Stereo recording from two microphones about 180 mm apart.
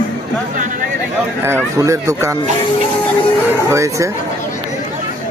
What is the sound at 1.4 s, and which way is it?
Speech, 15° right (ahead or behind).